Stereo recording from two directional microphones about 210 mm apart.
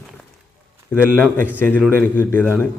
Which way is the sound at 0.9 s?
5° left (ahead or behind).